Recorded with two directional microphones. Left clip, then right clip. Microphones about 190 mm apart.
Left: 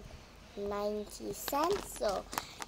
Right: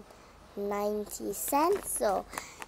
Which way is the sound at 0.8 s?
20° right (ahead or behind).